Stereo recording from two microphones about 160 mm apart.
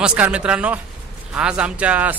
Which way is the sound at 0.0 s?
5° right (ahead or behind).